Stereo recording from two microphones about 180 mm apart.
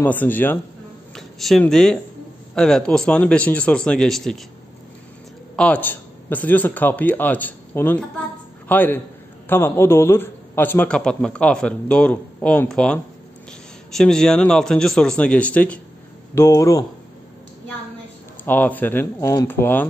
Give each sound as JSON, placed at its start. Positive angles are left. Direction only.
{"t": 0.0, "sound": "a man's voice", "side_deg": 10}
{"t": 5.6, "sound": "a man's voice", "side_deg": 10}
{"t": 18.4, "sound": "a man's voice", "side_deg": 10}